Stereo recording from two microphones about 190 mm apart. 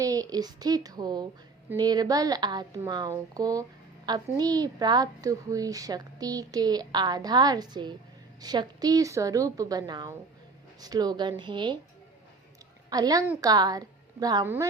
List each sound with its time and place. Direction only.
0.0 s a woman's voice: 20° right (ahead or behind)
12.9 s a woman's voice: 20° right (ahead or behind)